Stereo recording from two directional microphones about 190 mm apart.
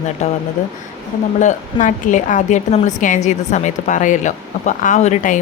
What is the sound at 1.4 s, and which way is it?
Speech, 40° left (ahead or behind).